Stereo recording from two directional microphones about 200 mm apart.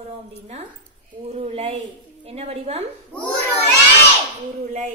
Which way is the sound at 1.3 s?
30° right (ahead or behind).